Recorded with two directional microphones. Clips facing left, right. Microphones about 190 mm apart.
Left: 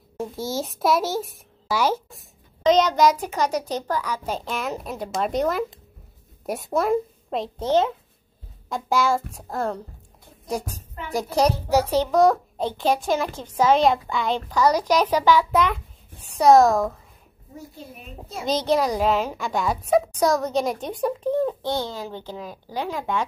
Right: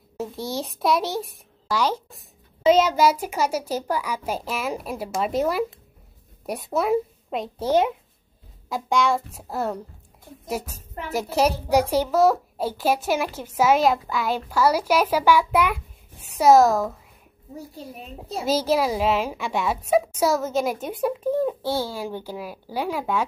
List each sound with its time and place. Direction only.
0.2 s a child's voice: centre (ahead or behind)
8.6 s a child's voice: centre (ahead or behind)
17.6 s a child's voice: 35° right (ahead or behind)
18.4 s a child's voice: 5° right (ahead or behind)